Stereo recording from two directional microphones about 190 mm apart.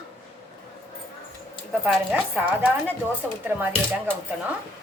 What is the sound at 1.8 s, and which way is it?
A woman's voice, 5° right (ahead or behind).